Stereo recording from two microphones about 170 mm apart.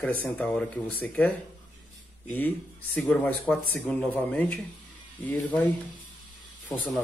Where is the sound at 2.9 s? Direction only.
10° left (ahead or behind).